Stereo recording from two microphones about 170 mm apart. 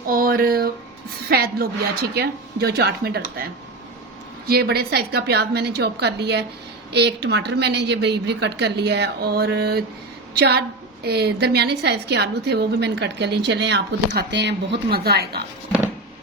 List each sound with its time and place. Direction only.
0.1 s a woman's voice: 60° right (ahead or behind)